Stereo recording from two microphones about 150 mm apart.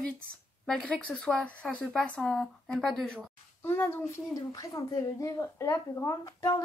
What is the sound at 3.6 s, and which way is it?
A child's voice, 15° left (ahead or behind).